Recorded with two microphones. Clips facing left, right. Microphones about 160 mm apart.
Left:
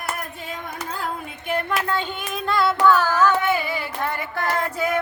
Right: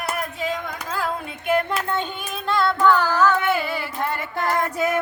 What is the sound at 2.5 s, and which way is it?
Music, centre (ahead or behind).